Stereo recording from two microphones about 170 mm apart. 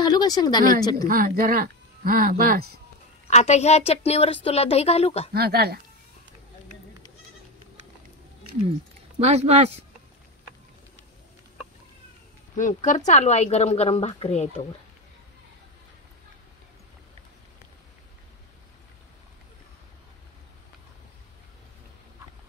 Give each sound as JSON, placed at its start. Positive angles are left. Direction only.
{"t": 0.0, "sound": "speech", "side_deg": 25}
{"t": 1.0, "sound": "speech", "side_deg": -55}
{"t": 3.3, "sound": "a woman's voice", "side_deg": 40}
{"t": 5.3, "sound": "speech", "side_deg": -65}
{"t": 9.2, "sound": "speech", "side_deg": -40}
{"t": 12.5, "sound": "a woman's voice", "side_deg": 50}